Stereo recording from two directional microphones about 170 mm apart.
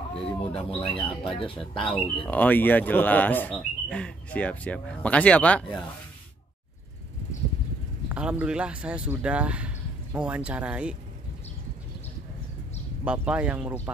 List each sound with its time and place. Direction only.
0.1 s speech: 35° left (ahead or behind)
1.9 s speech: 10° left (ahead or behind)
8.1 s speech: 5° right (ahead or behind)
13.0 s speech: 5° right (ahead or behind)